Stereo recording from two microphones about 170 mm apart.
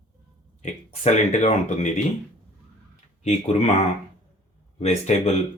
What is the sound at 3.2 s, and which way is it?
Speech, 40° left (ahead or behind).